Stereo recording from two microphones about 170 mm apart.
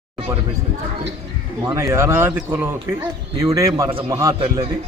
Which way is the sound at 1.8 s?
15° right (ahead or behind).